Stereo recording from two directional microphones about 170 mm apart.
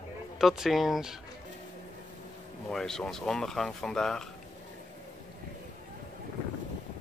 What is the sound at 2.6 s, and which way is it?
Speech, 5° left (ahead or behind).